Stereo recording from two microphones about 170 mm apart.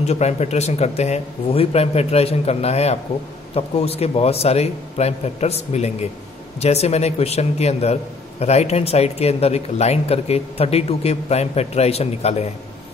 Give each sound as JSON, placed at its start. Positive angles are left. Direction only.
{"t": 0.0, "sound": "a man's voice", "side_deg": 40}